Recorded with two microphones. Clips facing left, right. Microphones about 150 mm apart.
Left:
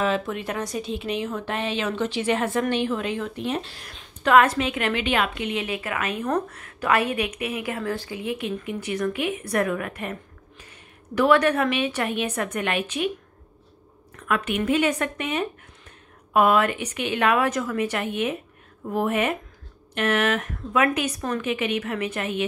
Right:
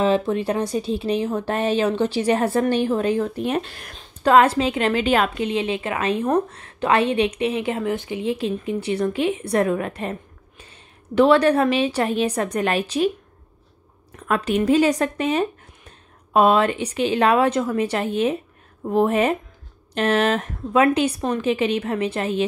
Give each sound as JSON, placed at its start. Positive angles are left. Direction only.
{"t": 0.0, "sound": "speech", "side_deg": -30}
{"t": 3.9, "sound": "a woman's voice", "side_deg": -30}
{"t": 14.1, "sound": "speech", "side_deg": -35}